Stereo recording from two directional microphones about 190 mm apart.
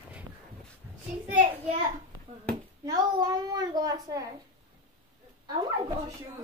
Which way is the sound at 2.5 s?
20° right (ahead or behind).